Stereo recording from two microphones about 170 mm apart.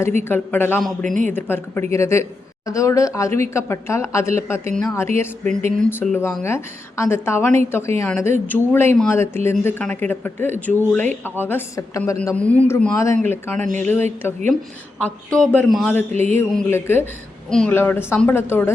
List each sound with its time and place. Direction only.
0.3 s speech: 10° left (ahead or behind)
1.0 s speech: 50° right (ahead or behind)
1.3 s speech: 10° left (ahead or behind)
4.7 s a man's voice: 5° left (ahead or behind)
4.9 s a man's voice: 15° left (ahead or behind)
6.4 s speech: 15° left (ahead or behind)
13.6 s speech: 45° right (ahead or behind)
14.2 s a man's voice: 15° left (ahead or behind)